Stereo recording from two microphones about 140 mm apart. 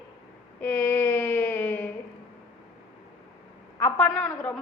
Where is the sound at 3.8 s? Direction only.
10° left (ahead or behind).